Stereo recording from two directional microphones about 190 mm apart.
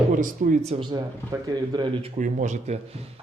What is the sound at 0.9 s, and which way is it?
Speech, 20° right (ahead or behind).